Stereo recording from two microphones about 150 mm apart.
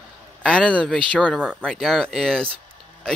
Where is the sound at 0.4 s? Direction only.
5° left (ahead or behind).